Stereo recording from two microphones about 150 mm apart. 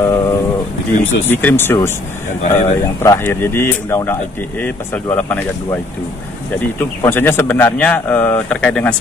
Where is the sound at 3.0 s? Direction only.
20° left (ahead or behind).